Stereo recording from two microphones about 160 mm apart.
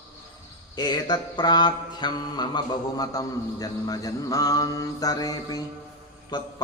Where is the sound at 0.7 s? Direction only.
25° left (ahead or behind).